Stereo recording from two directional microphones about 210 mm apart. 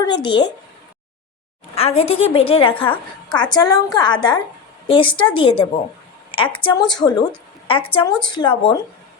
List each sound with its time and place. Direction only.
0.0 s a woman's voice: 20° left (ahead or behind)
1.7 s a woman's voice: 30° left (ahead or behind)